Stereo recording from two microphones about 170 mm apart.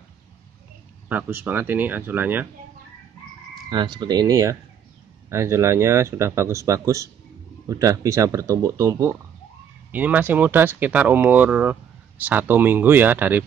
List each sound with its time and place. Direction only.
1.0 s speech: 10° right (ahead or behind)
3.7 s speech: 25° right (ahead or behind)